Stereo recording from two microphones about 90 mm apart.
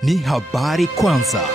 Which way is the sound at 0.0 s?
Centre (ahead or behind).